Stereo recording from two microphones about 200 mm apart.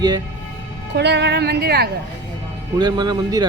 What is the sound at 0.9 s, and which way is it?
Speech, 60° right (ahead or behind).